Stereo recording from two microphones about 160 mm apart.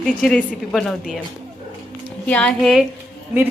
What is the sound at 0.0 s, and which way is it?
A woman's voice, 5° left (ahead or behind).